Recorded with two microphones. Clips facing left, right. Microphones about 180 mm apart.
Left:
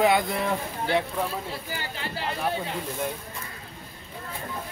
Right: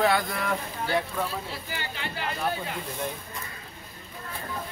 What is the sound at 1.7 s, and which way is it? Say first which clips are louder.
Speech: left 1 dB; 35° left (ahead or behind).